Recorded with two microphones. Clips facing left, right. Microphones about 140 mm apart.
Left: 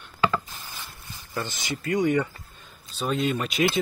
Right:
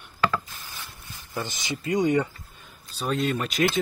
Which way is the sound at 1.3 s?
15° right (ahead or behind).